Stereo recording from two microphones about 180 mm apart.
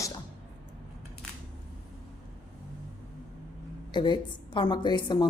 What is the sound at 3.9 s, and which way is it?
A woman's voice, 25° left (ahead or behind).